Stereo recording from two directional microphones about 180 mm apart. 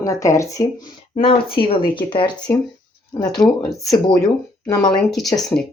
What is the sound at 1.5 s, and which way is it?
Speech, 30° left (ahead or behind).